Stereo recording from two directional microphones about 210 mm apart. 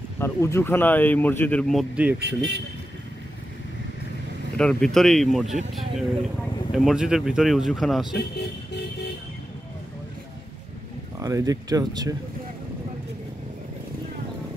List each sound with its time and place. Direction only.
0.2 s speech: 15° left (ahead or behind); by 2.1 s 5° right (ahead or behind)
2.1 s speech: 55° right (ahead or behind)
4.6 s speech: 5° left (ahead or behind)
6.7 s speech: centre (ahead or behind)
11.1 s speech: 15° right (ahead or behind)